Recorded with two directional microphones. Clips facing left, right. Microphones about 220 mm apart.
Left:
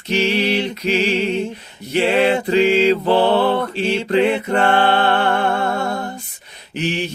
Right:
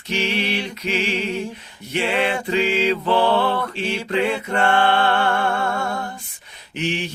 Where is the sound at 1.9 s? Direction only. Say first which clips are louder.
Left 6 dB; 35° left (ahead or behind).